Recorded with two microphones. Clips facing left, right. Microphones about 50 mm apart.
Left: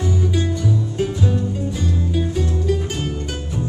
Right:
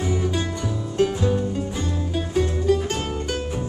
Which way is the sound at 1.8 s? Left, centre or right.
Centre.